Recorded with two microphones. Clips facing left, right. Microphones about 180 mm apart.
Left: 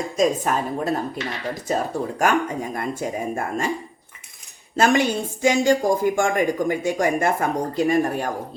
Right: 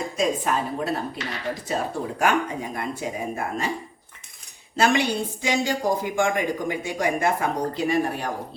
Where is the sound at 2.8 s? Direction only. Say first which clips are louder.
Left 2 dB; 45° left (ahead or behind).